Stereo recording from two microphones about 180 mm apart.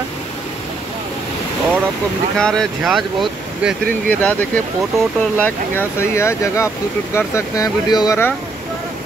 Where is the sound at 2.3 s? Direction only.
5° left (ahead or behind).